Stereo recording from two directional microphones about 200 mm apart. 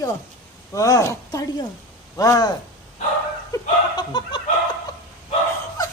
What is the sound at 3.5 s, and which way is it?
Chuckle, 20° left (ahead or behind).